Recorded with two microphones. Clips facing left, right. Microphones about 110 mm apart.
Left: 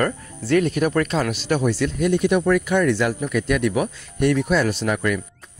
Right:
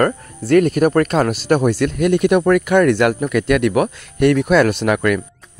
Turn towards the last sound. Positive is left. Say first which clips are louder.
# right 6 dB
turn(degrees=-70)  # may be behind; listen again after turning